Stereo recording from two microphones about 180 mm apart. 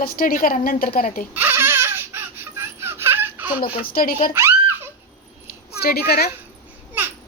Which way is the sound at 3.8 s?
55° left (ahead or behind).